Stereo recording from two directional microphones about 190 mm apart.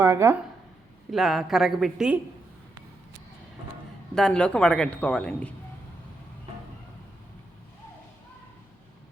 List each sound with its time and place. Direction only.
0.0 s speech: 15° right (ahead or behind)
1.1 s a man's voice: centre (ahead or behind)
4.1 s a man's voice: 5° left (ahead or behind)